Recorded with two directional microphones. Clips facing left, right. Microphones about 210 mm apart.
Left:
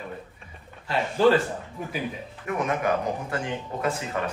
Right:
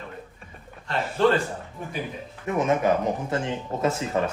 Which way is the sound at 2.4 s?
25° right (ahead or behind).